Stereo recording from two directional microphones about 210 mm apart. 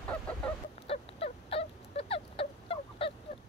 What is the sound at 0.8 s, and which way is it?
Fowl, 30° left (ahead or behind).